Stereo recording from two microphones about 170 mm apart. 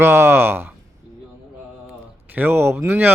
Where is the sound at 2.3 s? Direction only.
10° right (ahead or behind).